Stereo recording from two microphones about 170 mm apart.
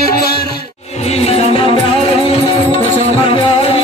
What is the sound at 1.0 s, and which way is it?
Music, 35° left (ahead or behind).